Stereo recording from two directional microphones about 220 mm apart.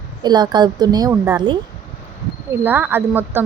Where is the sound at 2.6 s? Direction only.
10° right (ahead or behind).